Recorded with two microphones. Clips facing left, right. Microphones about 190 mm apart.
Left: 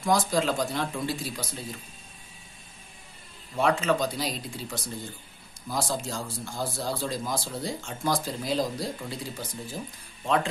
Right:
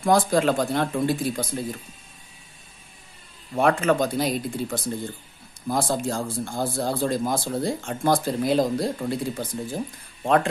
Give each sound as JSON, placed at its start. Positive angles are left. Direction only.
{"t": 0.0, "sound": "speech", "side_deg": -55}
{"t": 3.5, "sound": "speech", "side_deg": -55}